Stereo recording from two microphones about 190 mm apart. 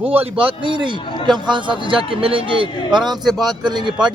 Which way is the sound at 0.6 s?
25° right (ahead or behind).